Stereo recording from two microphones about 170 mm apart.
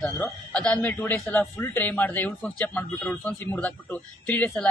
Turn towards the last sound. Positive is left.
turn(degrees=10)  # may be behind; listen again after turning